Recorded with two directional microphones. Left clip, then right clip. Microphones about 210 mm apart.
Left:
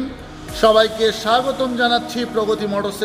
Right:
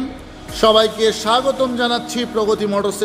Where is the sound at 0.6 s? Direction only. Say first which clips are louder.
Even; 30° right (ahead or behind).